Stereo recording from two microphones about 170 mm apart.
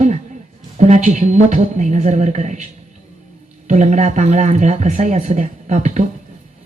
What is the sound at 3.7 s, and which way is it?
Speech, 45° right (ahead or behind).